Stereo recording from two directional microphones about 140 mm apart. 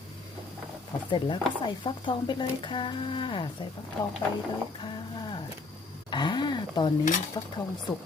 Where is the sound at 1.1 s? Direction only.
35° left (ahead or behind).